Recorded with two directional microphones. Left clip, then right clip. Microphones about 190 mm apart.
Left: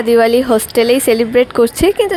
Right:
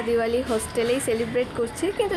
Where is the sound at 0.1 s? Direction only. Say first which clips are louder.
Left 13 dB; 50° left (ahead or behind).